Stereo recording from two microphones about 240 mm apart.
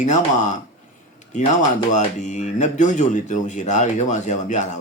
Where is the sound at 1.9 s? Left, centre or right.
Left.